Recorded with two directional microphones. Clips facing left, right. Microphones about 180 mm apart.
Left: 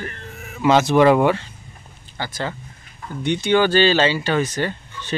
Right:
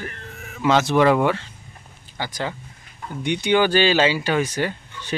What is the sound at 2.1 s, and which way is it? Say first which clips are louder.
Speech: left 1 dB; 15° right (ahead or behind).